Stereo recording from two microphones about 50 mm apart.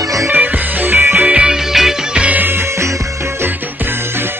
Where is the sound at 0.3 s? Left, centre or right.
Right.